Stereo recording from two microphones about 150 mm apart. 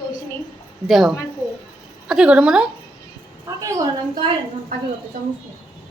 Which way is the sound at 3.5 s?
15° right (ahead or behind).